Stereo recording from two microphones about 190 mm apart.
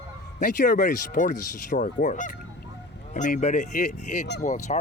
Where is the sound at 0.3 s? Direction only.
45° left (ahead or behind).